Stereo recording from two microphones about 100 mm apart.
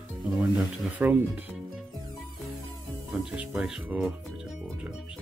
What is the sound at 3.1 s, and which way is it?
Speech, 10° right (ahead or behind).